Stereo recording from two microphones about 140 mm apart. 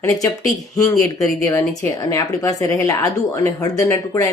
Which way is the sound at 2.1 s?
25° left (ahead or behind).